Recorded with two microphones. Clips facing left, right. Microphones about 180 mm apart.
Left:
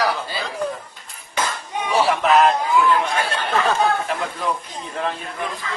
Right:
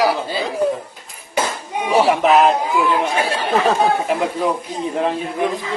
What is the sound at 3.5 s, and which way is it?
Speech, 30° right (ahead or behind).